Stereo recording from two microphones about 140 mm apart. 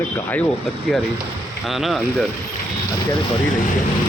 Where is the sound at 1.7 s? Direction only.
Centre (ahead or behind).